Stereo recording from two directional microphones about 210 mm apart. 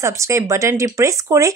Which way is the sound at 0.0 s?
15° right (ahead or behind).